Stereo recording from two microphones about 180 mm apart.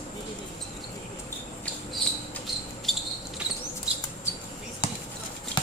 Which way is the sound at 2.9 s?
Centre (ahead or behind).